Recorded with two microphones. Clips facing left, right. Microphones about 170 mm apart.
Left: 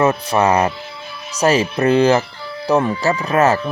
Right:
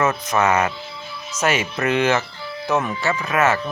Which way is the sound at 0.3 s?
35° left (ahead or behind).